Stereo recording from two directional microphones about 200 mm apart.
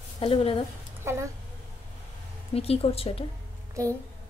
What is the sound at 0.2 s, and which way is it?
Speech, 25° left (ahead or behind).